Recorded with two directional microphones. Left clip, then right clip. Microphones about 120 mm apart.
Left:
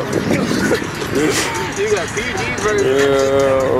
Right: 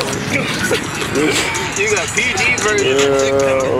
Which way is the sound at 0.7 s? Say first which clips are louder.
Right 1 dB; 25° right (ahead or behind).